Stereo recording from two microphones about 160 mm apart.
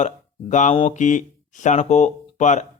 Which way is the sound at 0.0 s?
45° left (ahead or behind).